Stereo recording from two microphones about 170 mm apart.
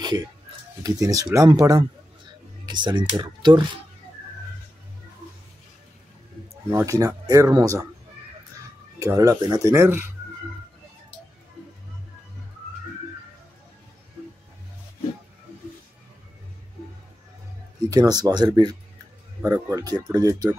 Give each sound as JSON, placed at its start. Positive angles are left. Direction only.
{"t": 0.8, "sound": "speech", "side_deg": -20}
{"t": 6.7, "sound": "speech", "side_deg": -15}
{"t": 9.0, "sound": "speech", "side_deg": -20}
{"t": 17.8, "sound": "speech", "side_deg": -20}